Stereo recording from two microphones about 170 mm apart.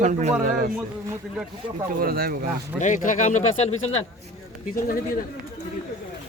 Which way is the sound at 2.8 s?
45° left (ahead or behind).